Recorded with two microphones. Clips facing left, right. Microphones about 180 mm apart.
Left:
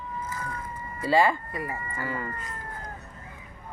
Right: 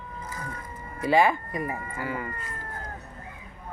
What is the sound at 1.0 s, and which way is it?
Speech, 20° right (ahead or behind).